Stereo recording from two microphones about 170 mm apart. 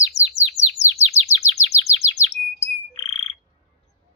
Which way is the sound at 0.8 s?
40° right (ahead or behind).